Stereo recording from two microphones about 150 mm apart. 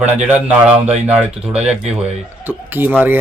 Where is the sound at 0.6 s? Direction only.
45° right (ahead or behind).